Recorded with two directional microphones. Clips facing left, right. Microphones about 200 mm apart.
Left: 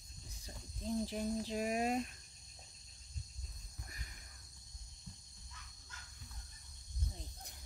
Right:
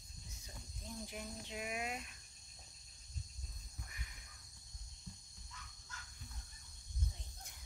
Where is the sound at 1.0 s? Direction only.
35° left (ahead or behind).